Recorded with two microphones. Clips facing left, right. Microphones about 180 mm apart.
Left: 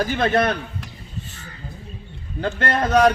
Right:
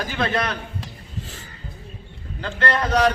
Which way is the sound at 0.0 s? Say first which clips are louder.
Left 5 dB; 50° left (ahead or behind).